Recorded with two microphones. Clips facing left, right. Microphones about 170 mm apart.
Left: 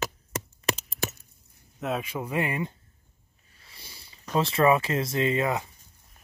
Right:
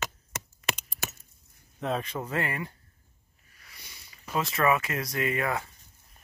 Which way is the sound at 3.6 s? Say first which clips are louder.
Left 3 dB; 30° left (ahead or behind).